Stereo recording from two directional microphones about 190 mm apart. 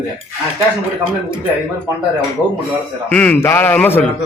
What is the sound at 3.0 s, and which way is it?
A man's voice, 10° left (ahead or behind).